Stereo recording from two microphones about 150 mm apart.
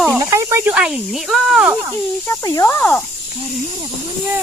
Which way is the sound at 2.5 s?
20° left (ahead or behind).